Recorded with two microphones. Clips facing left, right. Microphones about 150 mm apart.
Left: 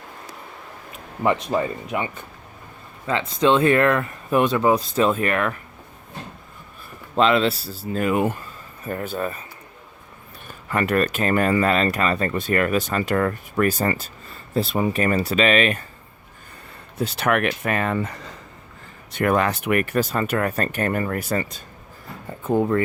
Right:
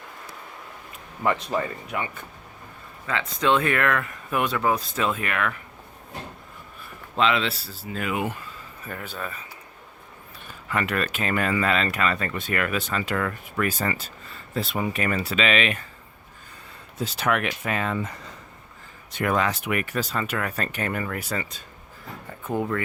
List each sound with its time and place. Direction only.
1.2 s speech: 20° left (ahead or behind)
3.1 s speech: 30° left (ahead or behind)
4.9 s speech: 35° left (ahead or behind)
7.2 s speech: 40° left (ahead or behind)
10.7 s speech: 45° left (ahead or behind)
17.0 s speech: 60° left (ahead or behind)
19.1 s speech: 55° left (ahead or behind)
22.3 s speech: 30° left (ahead or behind)